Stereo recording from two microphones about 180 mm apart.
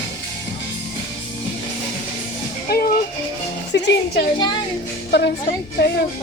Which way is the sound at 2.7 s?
60° left (ahead or behind).